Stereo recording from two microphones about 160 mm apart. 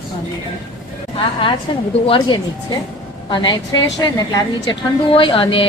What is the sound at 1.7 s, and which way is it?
A woman's voice, 30° left (ahead or behind).